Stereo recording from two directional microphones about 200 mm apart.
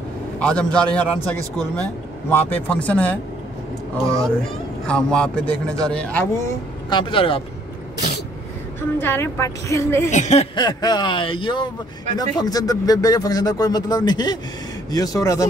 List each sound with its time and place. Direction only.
0.4 s a man's voice: 5° left (ahead or behind)
4.0 s a child's voice: 15° right (ahead or behind)
4.8 s a man's voice: 5° left (ahead or behind)
6.9 s speech: 25° left (ahead or behind)
8.9 s a woman's voice: 10° left (ahead or behind)
10.1 s a woman's voice: 35° left (ahead or behind); by 15.4 s 15° left (ahead or behind)